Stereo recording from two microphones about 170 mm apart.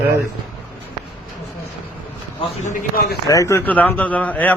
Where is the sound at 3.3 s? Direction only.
20° left (ahead or behind).